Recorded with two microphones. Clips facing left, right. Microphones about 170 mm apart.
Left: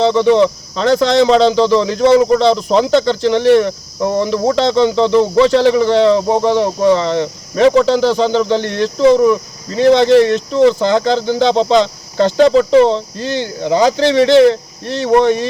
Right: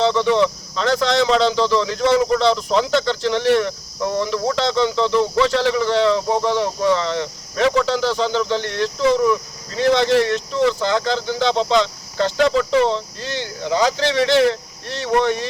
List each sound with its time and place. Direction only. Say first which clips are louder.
0.0 s speech: left 6 dB; 20° left (ahead or behind)